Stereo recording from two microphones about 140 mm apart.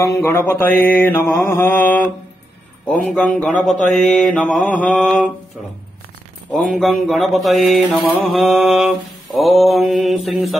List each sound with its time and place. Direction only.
0.0 s mantra: 20° left (ahead or behind)
6.5 s mantra: centre (ahead or behind)